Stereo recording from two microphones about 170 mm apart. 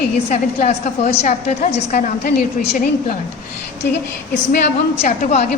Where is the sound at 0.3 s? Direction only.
40° left (ahead or behind).